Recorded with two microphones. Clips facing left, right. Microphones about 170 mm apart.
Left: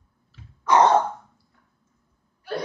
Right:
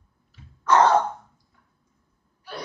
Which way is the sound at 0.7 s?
15° left (ahead or behind).